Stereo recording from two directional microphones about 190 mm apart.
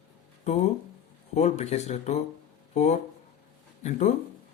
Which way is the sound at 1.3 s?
35° left (ahead or behind).